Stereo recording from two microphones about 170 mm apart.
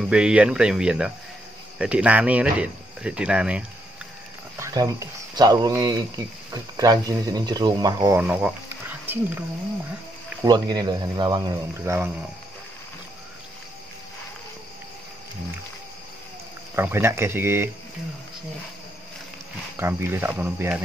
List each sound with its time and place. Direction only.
0.0 s speech: 5° right (ahead or behind)
4.6 s speech: 20° right (ahead or behind)
8.2 s speech: 10° right (ahead or behind)
10.4 s speech: 25° right (ahead or behind)
11.8 s speech: 15° right (ahead or behind)
16.7 s speech: 15° right (ahead or behind)
19.8 s speech: 15° right (ahead or behind)